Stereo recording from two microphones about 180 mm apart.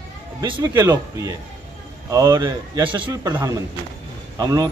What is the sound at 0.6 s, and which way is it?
A man's voice, 15° right (ahead or behind).